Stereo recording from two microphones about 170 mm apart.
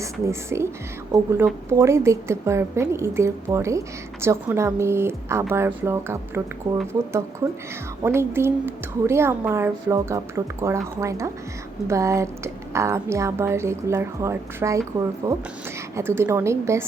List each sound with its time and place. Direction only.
0.0 s a woman's voice: 15° right (ahead or behind)